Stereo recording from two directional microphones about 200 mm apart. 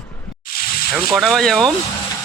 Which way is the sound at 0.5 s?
45° left (ahead or behind).